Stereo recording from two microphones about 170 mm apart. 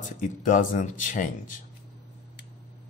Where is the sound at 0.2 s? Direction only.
50° left (ahead or behind).